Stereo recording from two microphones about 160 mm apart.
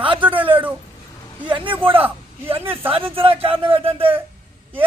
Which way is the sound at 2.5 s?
35° right (ahead or behind).